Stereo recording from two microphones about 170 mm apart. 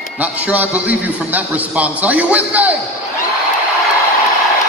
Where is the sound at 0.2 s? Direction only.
10° right (ahead or behind).